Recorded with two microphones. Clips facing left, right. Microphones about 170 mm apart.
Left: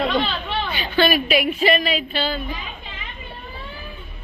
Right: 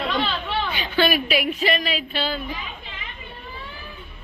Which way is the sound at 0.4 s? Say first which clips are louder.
Even; 10° right (ahead or behind).